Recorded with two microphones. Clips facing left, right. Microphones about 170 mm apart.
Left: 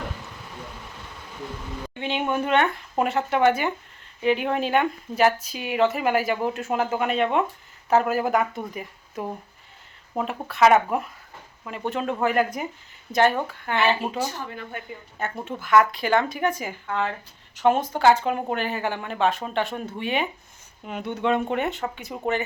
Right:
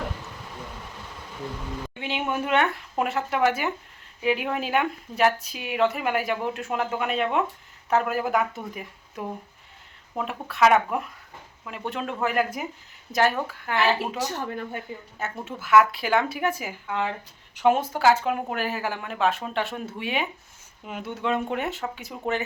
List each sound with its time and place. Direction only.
2.0 s a woman's voice: 5° right (ahead or behind)
14.2 s speech: 70° right (ahead or behind)
15.2 s a woman's voice: 5° right (ahead or behind)